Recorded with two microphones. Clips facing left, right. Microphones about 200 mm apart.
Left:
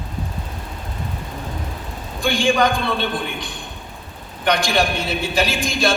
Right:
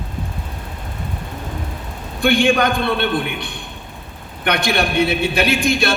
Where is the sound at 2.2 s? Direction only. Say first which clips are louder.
Right 3 dB; 60° right (ahead or behind).